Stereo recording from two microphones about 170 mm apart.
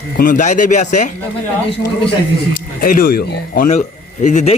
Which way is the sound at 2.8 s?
60° left (ahead or behind).